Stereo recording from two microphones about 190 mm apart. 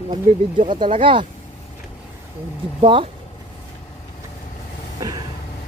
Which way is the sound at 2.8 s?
30° right (ahead or behind).